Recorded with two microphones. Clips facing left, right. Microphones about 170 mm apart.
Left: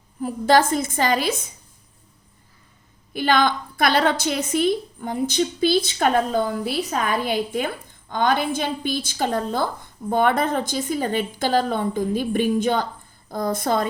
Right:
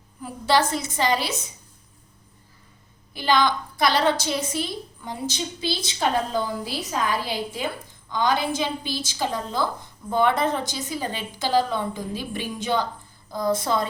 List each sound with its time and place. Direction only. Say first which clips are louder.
0.2 s a woman's voice: left 4 dB; 50° left (ahead or behind)
3.1 s a woman's voice: left 2 dB; 55° left (ahead or behind)